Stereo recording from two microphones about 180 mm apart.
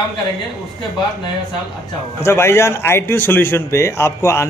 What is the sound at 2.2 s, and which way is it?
A man's voice, 15° left (ahead or behind).